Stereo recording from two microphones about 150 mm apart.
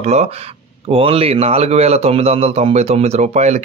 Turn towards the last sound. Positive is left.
turn(degrees=-50)  # may be behind; listen again after turning